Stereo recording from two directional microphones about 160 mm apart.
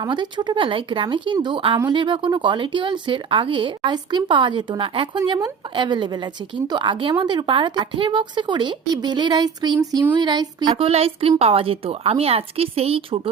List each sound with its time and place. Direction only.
0.0 s a woman's voice: 30° right (ahead or behind)